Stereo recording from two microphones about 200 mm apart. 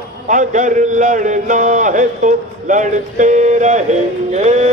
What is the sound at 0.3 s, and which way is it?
A man's voice, 40° right (ahead or behind).